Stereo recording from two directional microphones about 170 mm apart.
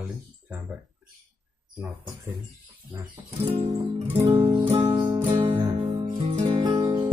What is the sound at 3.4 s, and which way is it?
Music, 35° right (ahead or behind).